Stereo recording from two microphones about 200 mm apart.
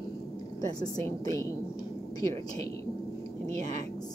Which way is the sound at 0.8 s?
15° left (ahead or behind).